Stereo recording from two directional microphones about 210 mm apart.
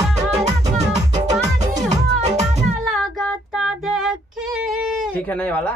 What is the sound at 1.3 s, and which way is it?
Music, 20° right (ahead or behind).